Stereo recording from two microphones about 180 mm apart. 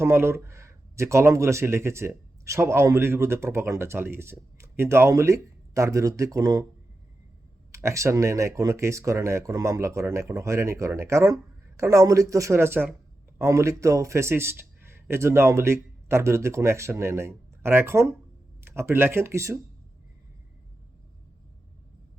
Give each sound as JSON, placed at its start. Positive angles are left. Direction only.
{"t": 0.0, "sound": "speech", "side_deg": -15}
{"t": 7.7, "sound": "speech", "side_deg": -15}